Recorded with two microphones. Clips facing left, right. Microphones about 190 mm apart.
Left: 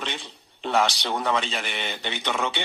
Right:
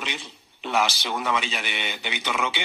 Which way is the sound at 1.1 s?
30° left (ahead or behind).